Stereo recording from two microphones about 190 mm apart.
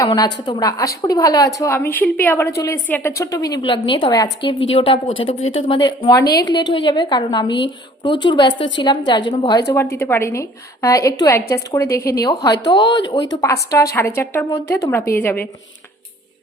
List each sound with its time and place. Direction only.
0.4 s a woman's voice: 20° left (ahead or behind)
8.5 s a woman's voice: 75° left (ahead or behind)
8.8 s a woman's voice: 25° left (ahead or behind)